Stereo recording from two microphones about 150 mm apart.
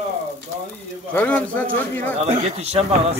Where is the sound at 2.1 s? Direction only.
45° right (ahead or behind).